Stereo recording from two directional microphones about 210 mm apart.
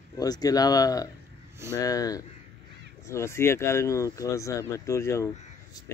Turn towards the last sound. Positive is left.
turn(degrees=15)  # may be behind; listen again after turning